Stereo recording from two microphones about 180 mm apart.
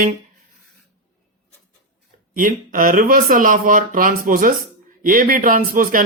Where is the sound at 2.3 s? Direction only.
50° right (ahead or behind).